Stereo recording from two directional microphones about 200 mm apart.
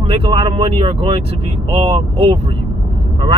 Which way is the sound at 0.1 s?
25° right (ahead or behind).